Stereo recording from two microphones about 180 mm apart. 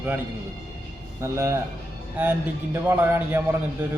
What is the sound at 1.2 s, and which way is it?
A man's voice, 15° right (ahead or behind).